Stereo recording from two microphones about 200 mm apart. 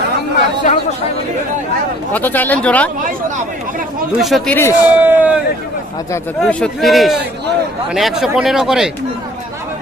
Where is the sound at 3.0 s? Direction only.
40° right (ahead or behind).